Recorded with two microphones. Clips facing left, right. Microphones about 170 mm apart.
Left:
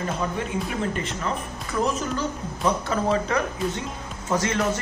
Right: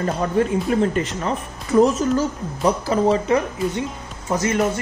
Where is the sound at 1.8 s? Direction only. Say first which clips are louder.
Right 9 dB; 35° right (ahead or behind).